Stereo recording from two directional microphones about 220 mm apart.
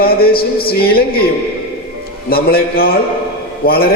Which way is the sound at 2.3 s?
45° left (ahead or behind).